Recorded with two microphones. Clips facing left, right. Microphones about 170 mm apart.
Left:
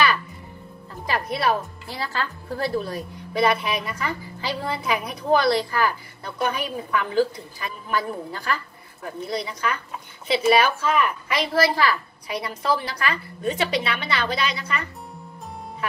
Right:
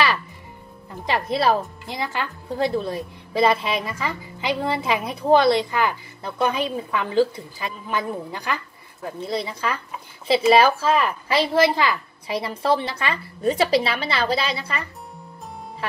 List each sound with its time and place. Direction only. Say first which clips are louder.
1.0 s a woman's voice: right 3 dB; 25° right (ahead or behind)
2.0 s a woman's voice: right 1 dB; 15° right (ahead or behind)